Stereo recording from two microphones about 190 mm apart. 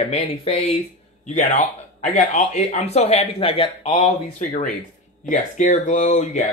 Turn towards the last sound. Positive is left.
turn(degrees=35)  # may be behind; listen again after turning